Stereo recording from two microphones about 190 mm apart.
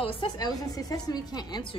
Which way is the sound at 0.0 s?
25° left (ahead or behind).